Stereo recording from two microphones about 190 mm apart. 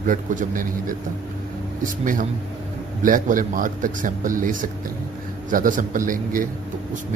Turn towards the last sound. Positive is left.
turn(degrees=-45)  # may be behind; listen again after turning